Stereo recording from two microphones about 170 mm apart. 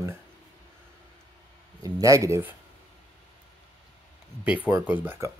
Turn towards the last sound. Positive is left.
turn(degrees=-10)  # may be behind; listen again after turning